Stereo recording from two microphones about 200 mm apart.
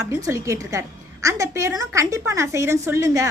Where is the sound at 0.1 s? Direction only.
15° right (ahead or behind).